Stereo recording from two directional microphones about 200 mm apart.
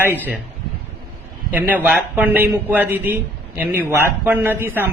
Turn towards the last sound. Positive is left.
turn(degrees=-10)  # may be behind; listen again after turning